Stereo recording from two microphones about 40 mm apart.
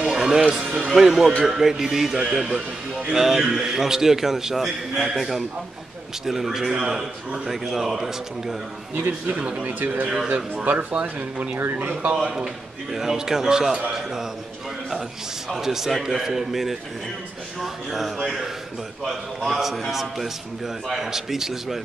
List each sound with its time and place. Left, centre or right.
0.1 s music: centre
0.7 s speech: right
0.9 s a man's voice: centre
9.3 s speech: right
9.7 s speech: right
11.5 s speech: right
11.9 s speech: right
12.9 s a man's voice: centre
15.5 s a man's voice: centre
19.5 s a man's voice: centre